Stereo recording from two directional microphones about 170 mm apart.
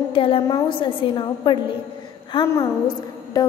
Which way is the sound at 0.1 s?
30° left (ahead or behind).